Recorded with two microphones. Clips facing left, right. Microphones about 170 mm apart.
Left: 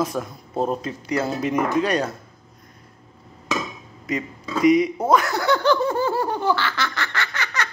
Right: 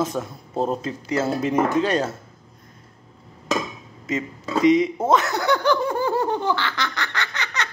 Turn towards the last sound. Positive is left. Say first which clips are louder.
# left 1 dB
turn(degrees=-20)  # may be behind; listen again after turning